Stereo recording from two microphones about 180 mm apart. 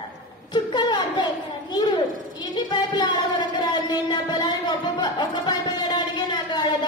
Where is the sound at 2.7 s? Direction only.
25° left (ahead or behind).